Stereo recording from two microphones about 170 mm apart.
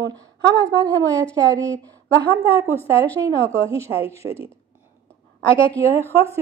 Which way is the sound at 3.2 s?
15° right (ahead or behind).